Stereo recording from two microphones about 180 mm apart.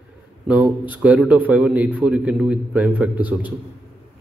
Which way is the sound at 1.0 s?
5° right (ahead or behind).